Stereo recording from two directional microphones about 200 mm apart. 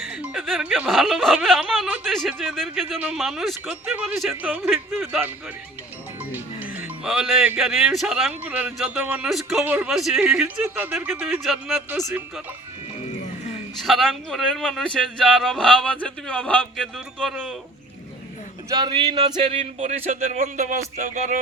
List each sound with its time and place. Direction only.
0.0 s speech: centre (ahead or behind)
6.3 s speech: 10° right (ahead or behind)
13.7 s speech: centre (ahead or behind)
18.7 s speech: 25° right (ahead or behind)